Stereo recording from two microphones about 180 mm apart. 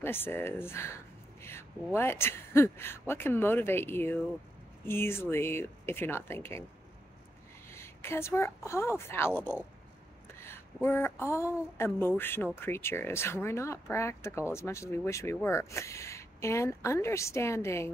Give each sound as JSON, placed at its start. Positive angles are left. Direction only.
{"t": 0.0, "sound": "speech", "side_deg": 10}
{"t": 7.7, "sound": "speech", "side_deg": 15}